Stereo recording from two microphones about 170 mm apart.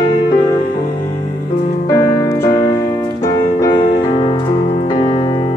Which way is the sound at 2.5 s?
35° left (ahead or behind).